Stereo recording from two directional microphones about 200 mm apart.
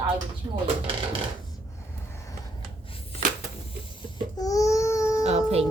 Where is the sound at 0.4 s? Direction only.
20° right (ahead or behind).